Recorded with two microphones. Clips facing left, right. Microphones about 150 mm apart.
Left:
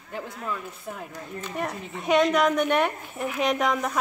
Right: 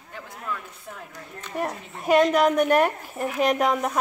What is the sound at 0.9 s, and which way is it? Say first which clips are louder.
Speech: left 3 dB; 5° left (ahead or behind).